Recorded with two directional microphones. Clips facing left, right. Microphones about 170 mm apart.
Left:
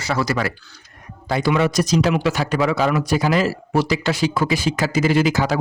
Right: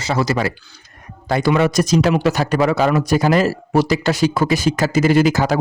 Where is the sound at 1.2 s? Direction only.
45° right (ahead or behind).